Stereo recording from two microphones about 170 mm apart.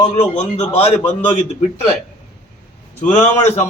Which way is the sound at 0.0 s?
40° left (ahead or behind).